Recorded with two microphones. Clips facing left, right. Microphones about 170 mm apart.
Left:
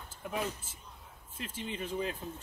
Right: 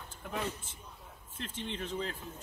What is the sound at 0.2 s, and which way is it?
A man's voice, 5° left (ahead or behind).